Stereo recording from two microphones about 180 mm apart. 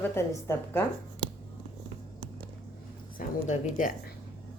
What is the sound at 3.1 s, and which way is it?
Speech, 45° left (ahead or behind).